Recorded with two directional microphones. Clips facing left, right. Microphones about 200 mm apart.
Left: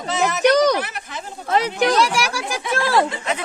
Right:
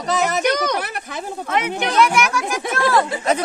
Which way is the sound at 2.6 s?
45° right (ahead or behind).